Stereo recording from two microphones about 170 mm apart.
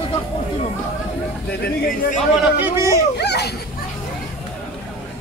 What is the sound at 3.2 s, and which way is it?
Children playing, 80° left.